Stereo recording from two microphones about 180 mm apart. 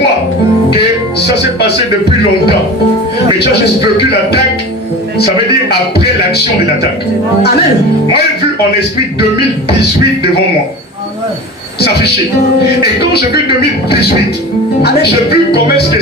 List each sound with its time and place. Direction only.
14.8 s speech: 60° left (ahead or behind)